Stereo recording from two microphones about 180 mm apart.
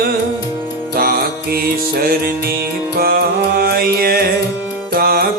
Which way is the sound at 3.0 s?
55° right (ahead or behind).